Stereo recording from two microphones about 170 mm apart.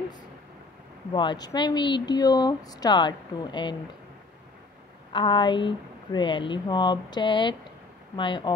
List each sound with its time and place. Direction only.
1.1 s speech: 25° left (ahead or behind)
5.1 s speech: 25° left (ahead or behind)